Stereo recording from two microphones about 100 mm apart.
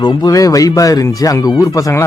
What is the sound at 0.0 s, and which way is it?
A man's voice, 35° left (ahead or behind).